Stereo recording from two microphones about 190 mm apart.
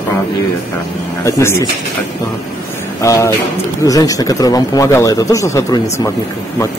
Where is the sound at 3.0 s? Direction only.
15° left (ahead or behind).